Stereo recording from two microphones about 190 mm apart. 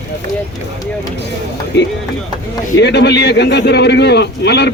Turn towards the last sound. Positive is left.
turn(degrees=60)  # may be behind; listen again after turning